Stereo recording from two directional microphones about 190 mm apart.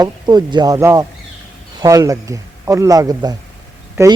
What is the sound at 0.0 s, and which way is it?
Speech, 20° right (ahead or behind).